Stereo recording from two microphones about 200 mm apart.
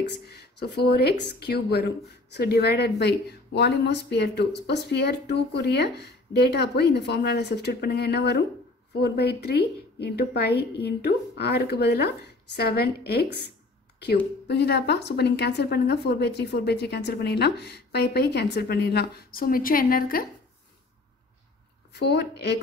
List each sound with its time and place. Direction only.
0.0 s a woman's voice: 55° left (ahead or behind)
14.5 s speech: 55° left (ahead or behind)
21.9 s speech: 55° left (ahead or behind)